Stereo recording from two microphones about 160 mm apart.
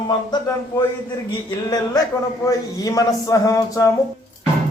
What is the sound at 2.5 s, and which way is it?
Speech, 20° left (ahead or behind).